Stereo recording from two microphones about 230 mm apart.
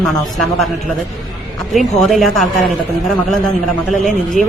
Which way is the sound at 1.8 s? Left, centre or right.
Centre.